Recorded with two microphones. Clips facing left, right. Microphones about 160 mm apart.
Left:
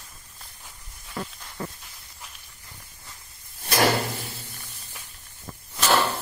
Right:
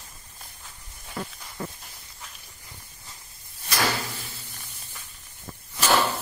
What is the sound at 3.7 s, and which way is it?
Drawer open or close, 50° left (ahead or behind).